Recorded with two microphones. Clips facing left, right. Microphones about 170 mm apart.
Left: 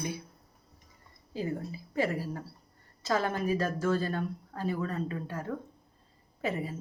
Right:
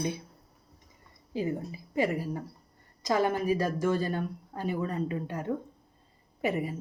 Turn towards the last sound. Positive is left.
turn(degrees=-15)  # may be behind; listen again after turning